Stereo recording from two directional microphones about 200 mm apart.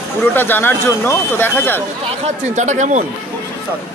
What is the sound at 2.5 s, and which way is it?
Speech, 35° right (ahead or behind).